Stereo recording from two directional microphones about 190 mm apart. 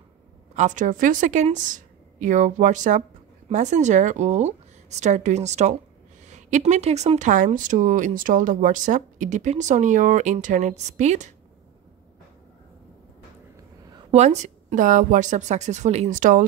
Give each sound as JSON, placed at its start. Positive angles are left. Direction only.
{"t": 0.6, "sound": "speech", "side_deg": -40}
{"t": 14.1, "sound": "speech", "side_deg": -35}